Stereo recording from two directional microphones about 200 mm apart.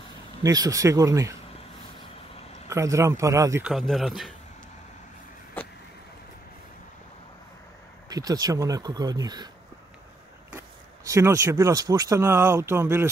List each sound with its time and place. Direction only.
0.4 s speech: 15° right (ahead or behind)
2.7 s speech: 15° right (ahead or behind)
3.6 s speech: centre (ahead or behind)
5.6 s vehicle: 10° left (ahead or behind)
8.1 s speech: 20° right (ahead or behind)
11.1 s speech: 15° right (ahead or behind)